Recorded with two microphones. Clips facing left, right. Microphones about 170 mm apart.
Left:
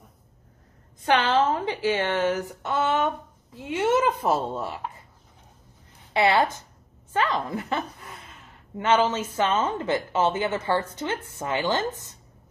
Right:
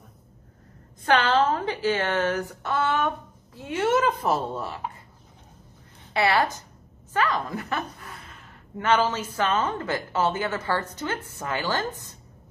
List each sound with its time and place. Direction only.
1.0 s a woman's voice: 15° left (ahead or behind)
6.1 s a woman's voice: 20° left (ahead or behind)